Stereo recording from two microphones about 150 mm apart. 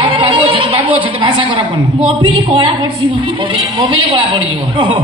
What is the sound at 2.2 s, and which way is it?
A man's voice, 35° right (ahead or behind).